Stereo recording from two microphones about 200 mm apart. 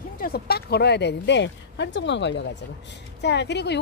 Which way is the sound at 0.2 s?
50° left (ahead or behind).